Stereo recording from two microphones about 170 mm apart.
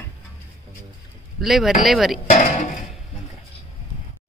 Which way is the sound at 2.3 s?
45° left (ahead or behind).